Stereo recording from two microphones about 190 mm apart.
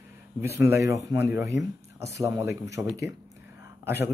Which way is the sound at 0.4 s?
10° right (ahead or behind).